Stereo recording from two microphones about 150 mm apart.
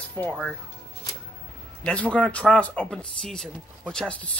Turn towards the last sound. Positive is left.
turn(degrees=5)  # may be behind; listen again after turning